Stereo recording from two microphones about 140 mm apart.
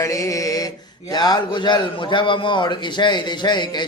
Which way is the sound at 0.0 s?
25° left (ahead or behind).